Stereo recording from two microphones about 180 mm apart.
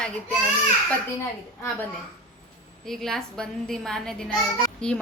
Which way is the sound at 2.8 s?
Centre (ahead or behind).